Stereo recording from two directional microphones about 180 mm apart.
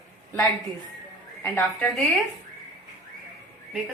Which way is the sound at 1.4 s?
10° left (ahead or behind).